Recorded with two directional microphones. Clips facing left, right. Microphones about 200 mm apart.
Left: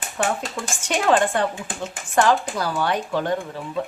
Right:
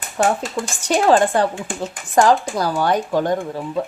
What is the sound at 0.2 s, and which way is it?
Speech, 35° right (ahead or behind).